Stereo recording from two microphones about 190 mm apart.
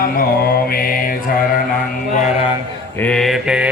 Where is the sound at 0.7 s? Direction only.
50° left (ahead or behind).